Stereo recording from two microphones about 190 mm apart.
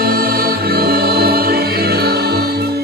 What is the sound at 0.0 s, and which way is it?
Music, 50° right (ahead or behind).